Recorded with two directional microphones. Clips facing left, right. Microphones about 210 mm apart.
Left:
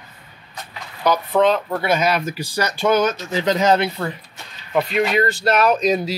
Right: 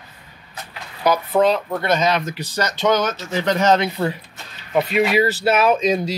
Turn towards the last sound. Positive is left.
turn(degrees=0)  # may be behind; listen again after turning